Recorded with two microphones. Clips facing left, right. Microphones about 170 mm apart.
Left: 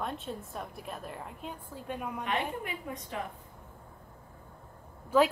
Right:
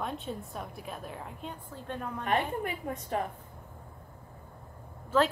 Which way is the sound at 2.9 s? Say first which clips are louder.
Right 3 dB; 45° right (ahead or behind).